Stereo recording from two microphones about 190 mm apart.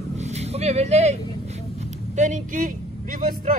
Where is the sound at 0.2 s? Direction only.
35° right (ahead or behind).